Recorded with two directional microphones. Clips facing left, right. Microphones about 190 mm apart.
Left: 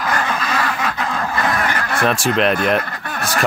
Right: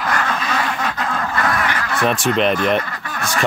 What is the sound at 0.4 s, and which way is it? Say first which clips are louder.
Duck: left 1 dB; centre (ahead or behind).